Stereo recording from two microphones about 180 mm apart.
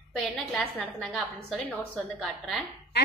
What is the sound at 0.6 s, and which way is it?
Speech, 5° left (ahead or behind).